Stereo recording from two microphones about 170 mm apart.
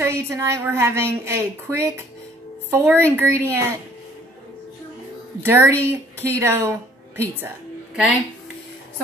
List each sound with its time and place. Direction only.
0.0 s a woman's voice: 15° right (ahead or behind)
5.4 s a woman's voice: 15° right (ahead or behind)